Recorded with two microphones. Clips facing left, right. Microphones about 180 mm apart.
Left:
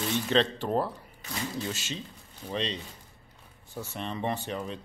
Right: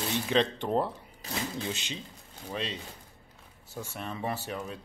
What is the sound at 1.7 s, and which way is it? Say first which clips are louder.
Speech: left 1 dB; 15° right (ahead or behind).